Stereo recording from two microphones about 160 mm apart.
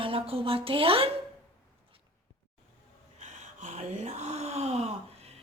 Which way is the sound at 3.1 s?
50° right (ahead or behind).